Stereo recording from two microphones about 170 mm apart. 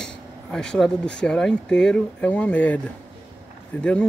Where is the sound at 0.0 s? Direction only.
5° left (ahead or behind).